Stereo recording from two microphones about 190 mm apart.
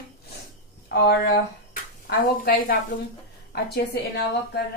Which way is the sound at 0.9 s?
55° left (ahead or behind).